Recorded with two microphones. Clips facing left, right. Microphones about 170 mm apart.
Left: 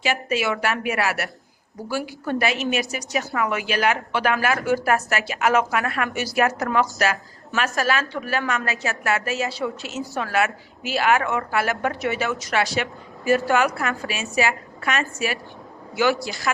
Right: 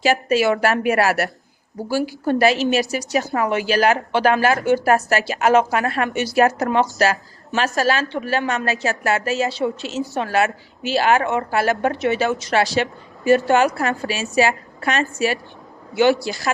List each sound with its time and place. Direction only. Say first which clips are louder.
0.0 s a woman's voice: right 6 dB; 35° right (ahead or behind)